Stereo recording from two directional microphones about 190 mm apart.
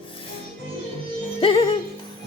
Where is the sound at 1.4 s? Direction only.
30° left (ahead or behind).